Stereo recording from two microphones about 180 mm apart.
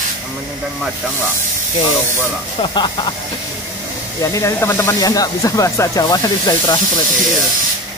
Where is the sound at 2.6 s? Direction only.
25° left (ahead or behind).